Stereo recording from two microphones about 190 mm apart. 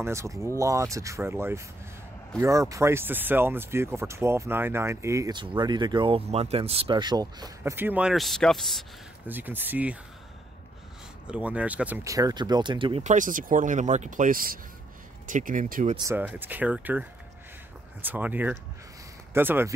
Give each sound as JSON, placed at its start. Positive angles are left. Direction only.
{"t": 0.0, "sound": "speech", "side_deg": -15}
{"t": 9.3, "sound": "speech", "side_deg": -10}
{"t": 11.2, "sound": "speech", "side_deg": -5}
{"t": 13.0, "sound": "speech", "side_deg": -40}
{"t": 16.0, "sound": "speech", "side_deg": -10}
{"t": 18.0, "sound": "speech", "side_deg": -10}